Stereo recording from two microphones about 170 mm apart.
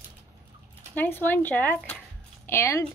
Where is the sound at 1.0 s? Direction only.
10° left (ahead or behind).